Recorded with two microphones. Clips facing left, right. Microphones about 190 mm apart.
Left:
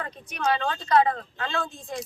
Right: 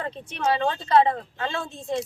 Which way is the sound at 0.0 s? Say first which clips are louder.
Right 2 dB; 25° right (ahead or behind).